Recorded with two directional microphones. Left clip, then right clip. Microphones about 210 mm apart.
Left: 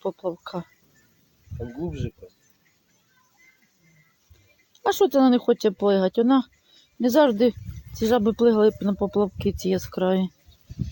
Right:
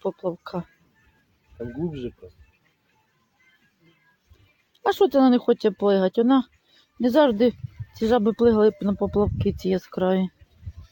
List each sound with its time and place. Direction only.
0.0 s speech: centre (ahead or behind)
1.9 s speech: 50° right (ahead or behind)
4.8 s speech: 5° right (ahead or behind)